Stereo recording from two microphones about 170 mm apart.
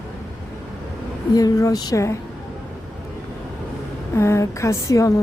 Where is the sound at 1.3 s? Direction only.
20° left (ahead or behind).